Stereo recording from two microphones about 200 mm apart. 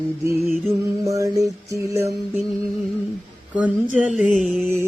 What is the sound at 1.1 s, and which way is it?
Music, 15° right (ahead or behind).